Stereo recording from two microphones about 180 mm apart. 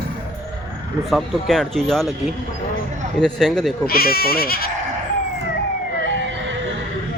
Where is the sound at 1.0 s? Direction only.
Centre (ahead or behind).